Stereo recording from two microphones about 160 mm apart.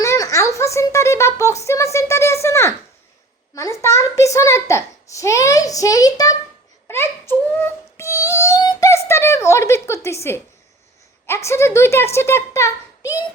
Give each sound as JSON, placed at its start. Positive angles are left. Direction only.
{"t": 0.0, "sound": "a sound", "side_deg": 20}
{"t": 3.5, "sound": "a child's voice", "side_deg": 20}
{"t": 6.8, "sound": "music", "side_deg": 15}
{"t": 9.0, "sound": "a woman's voice", "side_deg": 15}
{"t": 11.3, "sound": "a child's voice", "side_deg": 15}